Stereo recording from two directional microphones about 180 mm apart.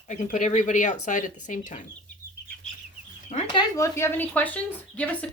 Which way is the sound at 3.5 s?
20° left (ahead or behind).